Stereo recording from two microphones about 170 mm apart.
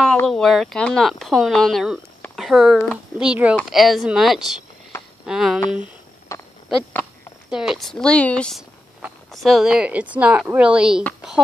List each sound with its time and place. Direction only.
0.3 s speech: centre (ahead or behind)
5.8 s a sound: 20° left (ahead or behind)
7.4 s speech: 5° right (ahead or behind)